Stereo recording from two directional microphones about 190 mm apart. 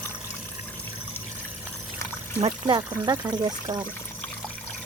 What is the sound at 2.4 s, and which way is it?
Speech, 25° right (ahead or behind).